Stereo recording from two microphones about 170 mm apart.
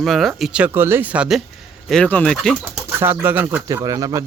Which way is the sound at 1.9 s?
5° left (ahead or behind).